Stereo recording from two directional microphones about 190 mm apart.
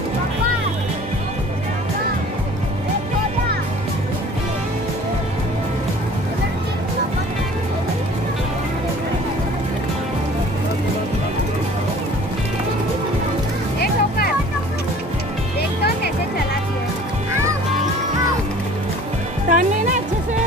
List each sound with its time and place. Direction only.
13.7 s music: 55° left (ahead or behind)
19.5 s music: 40° right (ahead or behind)